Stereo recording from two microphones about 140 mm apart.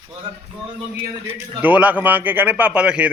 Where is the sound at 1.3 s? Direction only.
10° right (ahead or behind).